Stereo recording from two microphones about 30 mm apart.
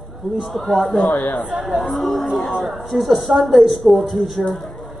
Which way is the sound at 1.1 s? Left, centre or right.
Left.